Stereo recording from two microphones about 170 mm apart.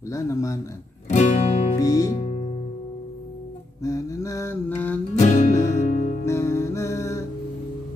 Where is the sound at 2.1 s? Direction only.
35° left (ahead or behind).